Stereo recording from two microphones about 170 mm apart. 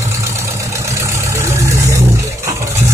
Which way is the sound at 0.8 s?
15° right (ahead or behind).